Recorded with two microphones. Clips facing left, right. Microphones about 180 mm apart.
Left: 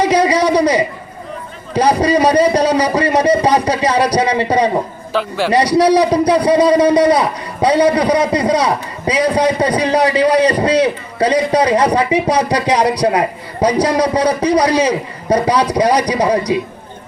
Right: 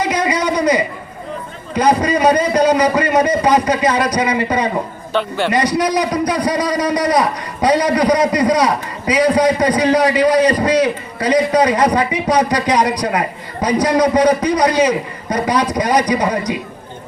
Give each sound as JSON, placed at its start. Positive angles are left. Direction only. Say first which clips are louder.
{"t": 0.1, "sound": "a sound", "louder": "left 5 dB", "side_deg": 35}
{"t": 1.7, "sound": "a man's voice", "louder": "left 2 dB", "side_deg": 35}
{"t": 5.1, "sound": "a man's voice", "louder": "even", "side_deg": 0}
{"t": 5.5, "sound": "a man's voice", "louder": "left 7 dB", "side_deg": 30}